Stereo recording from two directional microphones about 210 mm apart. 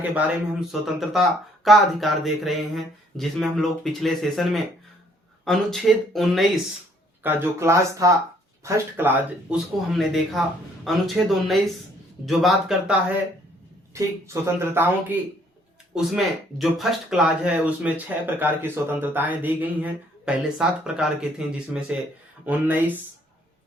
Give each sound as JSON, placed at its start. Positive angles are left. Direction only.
{"t": 0.0, "sound": "speech", "side_deg": -5}
{"t": 7.2, "sound": "speech", "side_deg": -10}
{"t": 13.9, "sound": "speech", "side_deg": -15}